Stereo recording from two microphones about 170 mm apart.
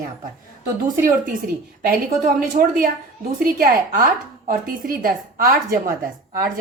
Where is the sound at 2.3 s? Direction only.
55° right (ahead or behind).